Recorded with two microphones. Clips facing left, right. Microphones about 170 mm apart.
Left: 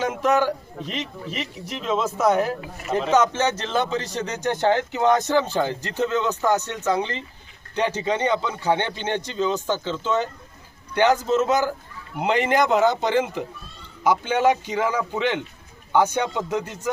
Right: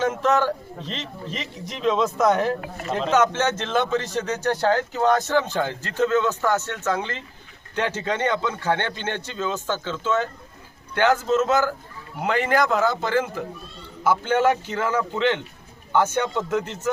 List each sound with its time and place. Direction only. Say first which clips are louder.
0.0 s a man's voice: even; 10° left (ahead or behind)